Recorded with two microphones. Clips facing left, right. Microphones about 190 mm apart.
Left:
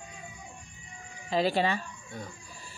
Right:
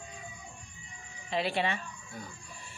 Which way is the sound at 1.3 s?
40° left (ahead or behind).